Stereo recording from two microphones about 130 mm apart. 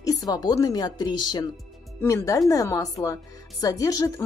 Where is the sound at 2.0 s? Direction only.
20° left (ahead or behind).